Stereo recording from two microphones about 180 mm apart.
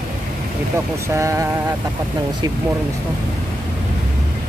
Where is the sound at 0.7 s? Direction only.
15° right (ahead or behind).